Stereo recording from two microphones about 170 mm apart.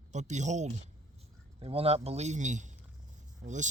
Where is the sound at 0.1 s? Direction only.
45° right (ahead or behind).